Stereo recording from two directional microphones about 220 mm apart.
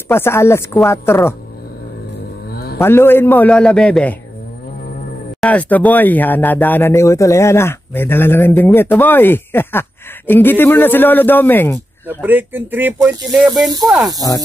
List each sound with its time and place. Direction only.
0.1 s speech: 10° left (ahead or behind)
2.5 s a sound: 45° left (ahead or behind)
2.8 s speech: 10° left (ahead or behind)
5.4 s speech: 5° left (ahead or behind)
12.1 s speech: 10° right (ahead or behind)
13.7 s speech: 15° right (ahead or behind)